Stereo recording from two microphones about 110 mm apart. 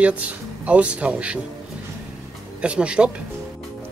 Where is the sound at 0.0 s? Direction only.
10° right (ahead or behind).